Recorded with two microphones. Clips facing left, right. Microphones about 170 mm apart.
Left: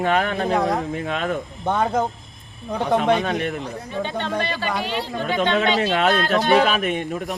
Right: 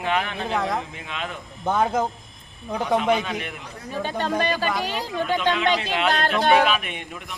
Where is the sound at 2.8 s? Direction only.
35° left (ahead or behind).